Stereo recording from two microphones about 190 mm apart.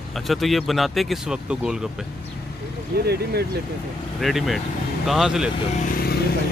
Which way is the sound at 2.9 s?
55° right (ahead or behind).